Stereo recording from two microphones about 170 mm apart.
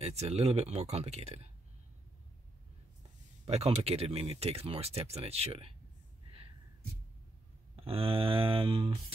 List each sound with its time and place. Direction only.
0.0 s speech: 40° right (ahead or behind)
3.4 s speech: 35° right (ahead or behind)
7.7 s speech: 35° right (ahead or behind)